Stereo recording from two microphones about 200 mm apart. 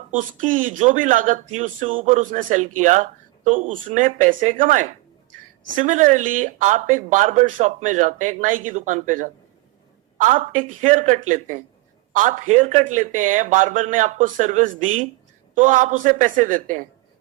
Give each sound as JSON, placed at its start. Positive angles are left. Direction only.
{"t": 0.1, "sound": "speech", "side_deg": -40}